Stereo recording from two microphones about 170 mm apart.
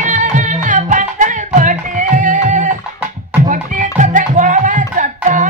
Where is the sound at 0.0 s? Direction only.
45° right (ahead or behind).